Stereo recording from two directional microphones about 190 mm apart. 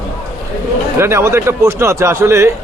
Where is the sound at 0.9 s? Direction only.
15° right (ahead or behind).